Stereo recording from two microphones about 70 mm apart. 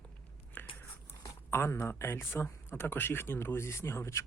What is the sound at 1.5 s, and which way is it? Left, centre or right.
Speech, left.